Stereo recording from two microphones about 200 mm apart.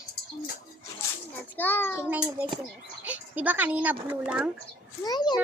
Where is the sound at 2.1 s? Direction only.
5° right (ahead or behind).